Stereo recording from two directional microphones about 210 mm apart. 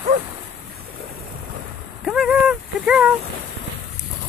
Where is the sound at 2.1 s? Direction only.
5° right (ahead or behind).